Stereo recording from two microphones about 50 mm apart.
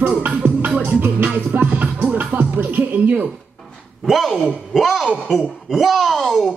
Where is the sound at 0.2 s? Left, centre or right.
Right.